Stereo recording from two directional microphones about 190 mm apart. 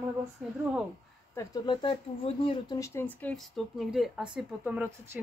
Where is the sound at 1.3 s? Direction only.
15° left (ahead or behind).